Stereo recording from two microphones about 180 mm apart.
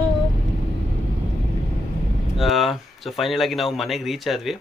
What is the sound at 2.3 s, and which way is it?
Speech, centre (ahead or behind).